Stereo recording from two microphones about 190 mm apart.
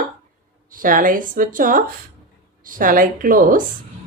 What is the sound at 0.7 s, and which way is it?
Speech, 45° right (ahead or behind).